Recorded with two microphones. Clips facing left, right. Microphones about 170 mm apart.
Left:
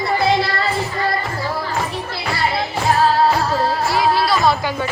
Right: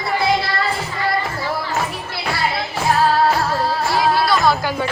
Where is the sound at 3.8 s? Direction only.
Centre (ahead or behind).